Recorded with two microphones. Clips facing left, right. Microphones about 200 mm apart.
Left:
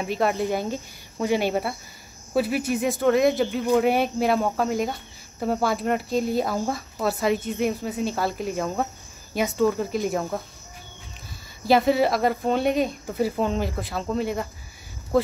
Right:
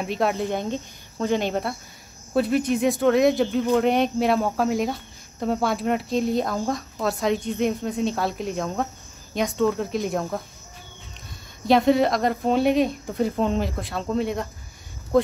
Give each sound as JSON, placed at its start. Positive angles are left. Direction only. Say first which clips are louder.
{"t": 0.0, "sound": "speech", "louder": "even", "side_deg": 0}
{"t": 11.6, "sound": "speech", "louder": "right 1 dB", "side_deg": 5}